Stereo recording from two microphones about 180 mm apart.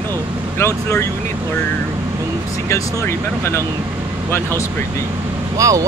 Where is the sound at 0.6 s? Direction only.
15° left (ahead or behind).